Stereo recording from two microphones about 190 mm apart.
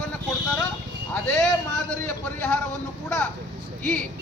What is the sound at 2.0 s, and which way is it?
Speech, 10° left (ahead or behind).